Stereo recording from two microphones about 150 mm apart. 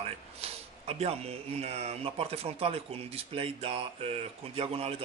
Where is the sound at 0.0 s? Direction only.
40° right (ahead or behind).